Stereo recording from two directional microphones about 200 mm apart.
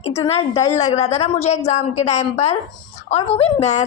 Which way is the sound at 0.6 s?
15° left (ahead or behind).